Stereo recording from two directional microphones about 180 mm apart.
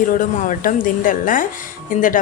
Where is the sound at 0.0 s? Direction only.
45° left (ahead or behind).